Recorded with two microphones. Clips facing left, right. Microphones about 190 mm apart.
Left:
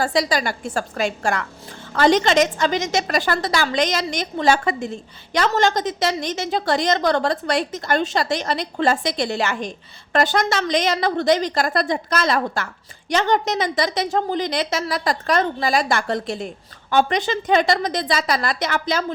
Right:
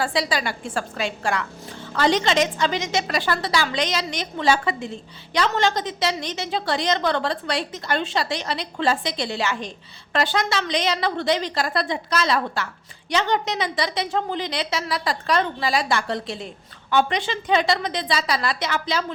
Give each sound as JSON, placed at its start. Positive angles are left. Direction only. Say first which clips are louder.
{"t": 0.0, "sound": "a woman's voice", "louder": "left 3 dB", "side_deg": 40}